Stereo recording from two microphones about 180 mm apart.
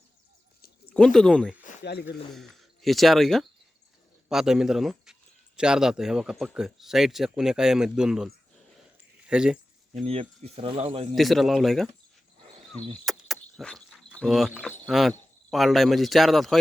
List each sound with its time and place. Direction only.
0.9 s speech: 5° left (ahead or behind)
1.8 s speech: 65° left (ahead or behind)
2.3 s speech: centre (ahead or behind)
9.2 s a sound: 5° right (ahead or behind)
10.1 s speech: 35° right (ahead or behind)
11.1 s speech: centre (ahead or behind)
13.1 s cricket: centre (ahead or behind)
14.8 s speech: centre (ahead or behind)